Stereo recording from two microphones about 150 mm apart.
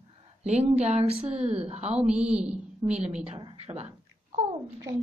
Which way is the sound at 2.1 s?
5° right (ahead or behind).